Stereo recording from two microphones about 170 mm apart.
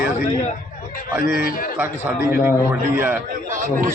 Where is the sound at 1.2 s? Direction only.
60° left (ahead or behind).